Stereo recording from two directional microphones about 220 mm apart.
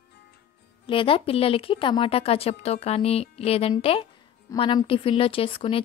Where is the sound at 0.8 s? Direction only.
25° left (ahead or behind).